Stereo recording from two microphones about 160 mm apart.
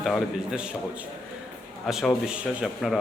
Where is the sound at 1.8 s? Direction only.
Centre (ahead or behind).